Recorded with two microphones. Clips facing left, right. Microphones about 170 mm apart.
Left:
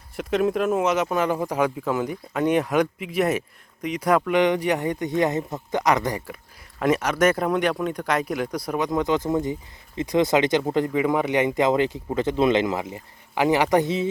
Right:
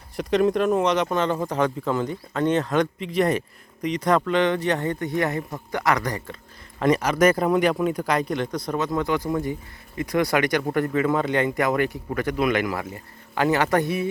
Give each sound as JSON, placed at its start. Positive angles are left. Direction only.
{"t": 0.2, "sound": "speech", "side_deg": 0}
{"t": 6.7, "sound": "speech", "side_deg": 5}